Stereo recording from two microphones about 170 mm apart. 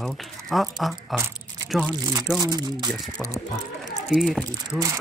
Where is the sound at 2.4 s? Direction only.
20° right (ahead or behind).